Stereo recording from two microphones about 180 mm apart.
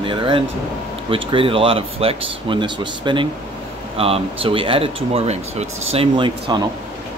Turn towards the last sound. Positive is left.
turn(degrees=-25)  # may be behind; listen again after turning